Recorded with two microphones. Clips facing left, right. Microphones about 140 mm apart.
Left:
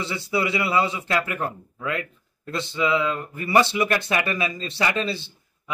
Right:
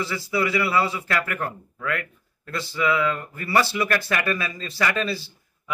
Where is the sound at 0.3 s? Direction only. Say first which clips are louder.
Even; 25° left (ahead or behind).